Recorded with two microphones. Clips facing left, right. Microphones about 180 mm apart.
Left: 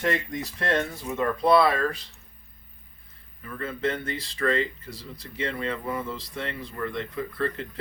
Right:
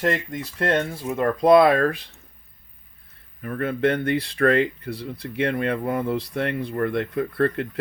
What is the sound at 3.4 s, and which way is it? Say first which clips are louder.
Speech: right 7 dB; 60° right (ahead or behind).